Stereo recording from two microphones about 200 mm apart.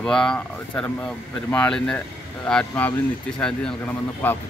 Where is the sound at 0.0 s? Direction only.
5° left (ahead or behind).